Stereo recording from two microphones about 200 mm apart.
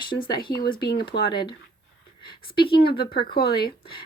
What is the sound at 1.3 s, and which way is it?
Speech, 25° left (ahead or behind).